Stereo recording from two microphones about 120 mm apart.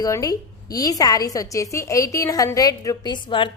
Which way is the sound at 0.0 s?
30° left (ahead or behind).